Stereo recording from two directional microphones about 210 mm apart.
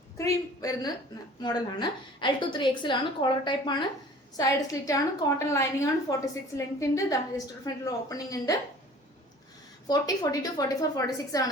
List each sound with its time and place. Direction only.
0.2 s a woman's voice: 15° left (ahead or behind)
9.8 s a woman's voice: 15° left (ahead or behind)